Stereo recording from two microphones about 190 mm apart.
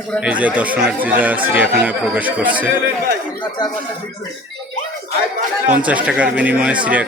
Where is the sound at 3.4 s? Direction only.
20° left (ahead or behind).